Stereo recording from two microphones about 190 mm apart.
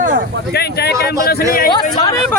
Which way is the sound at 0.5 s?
55° left (ahead or behind).